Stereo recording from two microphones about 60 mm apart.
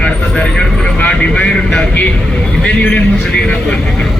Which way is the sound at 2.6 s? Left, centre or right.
Left.